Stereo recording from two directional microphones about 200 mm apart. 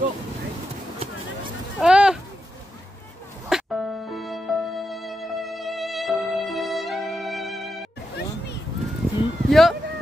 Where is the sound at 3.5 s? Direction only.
Centre (ahead or behind).